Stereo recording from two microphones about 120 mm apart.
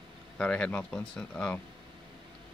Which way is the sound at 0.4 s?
10° left (ahead or behind).